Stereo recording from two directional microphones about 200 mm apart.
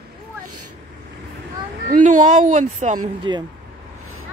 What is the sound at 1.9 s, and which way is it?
Speech, 40° right (ahead or behind).